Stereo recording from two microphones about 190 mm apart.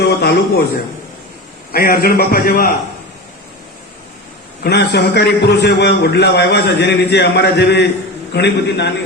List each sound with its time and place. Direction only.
0.0 s a sound: 60° left (ahead or behind)
1.7 s a man's voice: 50° left (ahead or behind)
4.6 s a man's voice: 60° left (ahead or behind)